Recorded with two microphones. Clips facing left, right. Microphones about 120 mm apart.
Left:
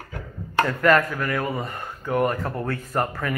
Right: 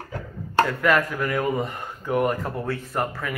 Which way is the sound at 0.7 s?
5° right (ahead or behind).